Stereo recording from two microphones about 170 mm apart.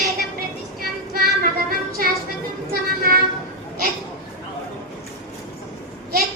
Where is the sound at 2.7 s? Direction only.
60° right (ahead or behind).